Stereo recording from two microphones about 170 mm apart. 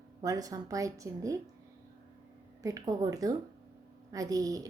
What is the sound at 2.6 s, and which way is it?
Speech, 20° right (ahead or behind).